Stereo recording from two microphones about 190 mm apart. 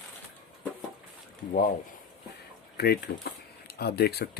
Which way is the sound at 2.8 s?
55° left (ahead or behind).